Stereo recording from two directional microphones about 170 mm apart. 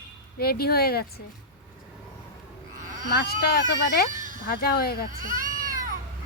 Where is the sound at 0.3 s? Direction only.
65° left (ahead or behind).